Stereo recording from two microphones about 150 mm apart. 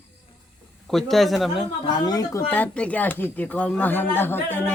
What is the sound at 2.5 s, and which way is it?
Speech, 10° left (ahead or behind).